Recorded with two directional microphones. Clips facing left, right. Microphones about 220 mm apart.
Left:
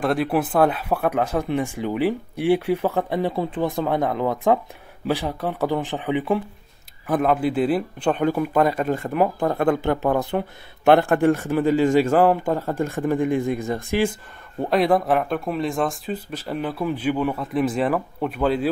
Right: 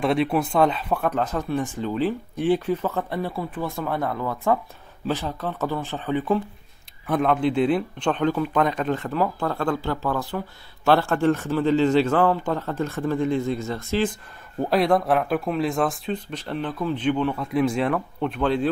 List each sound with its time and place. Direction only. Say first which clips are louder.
0.0 s speech: even; centre (ahead or behind)
14.6 s speech: left 1 dB; centre (ahead or behind)